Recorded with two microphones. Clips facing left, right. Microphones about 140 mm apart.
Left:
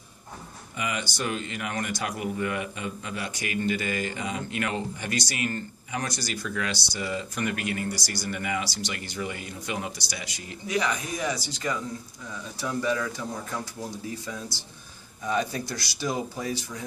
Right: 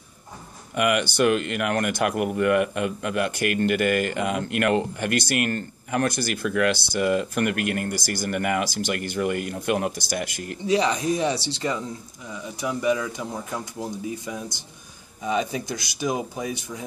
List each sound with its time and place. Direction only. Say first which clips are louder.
0.7 s speech: right 10 dB; 65° right (ahead or behind)
10.7 s speech: right 7 dB; 30° right (ahead or behind)
12.5 s speech: right 4 dB; 15° right (ahead or behind)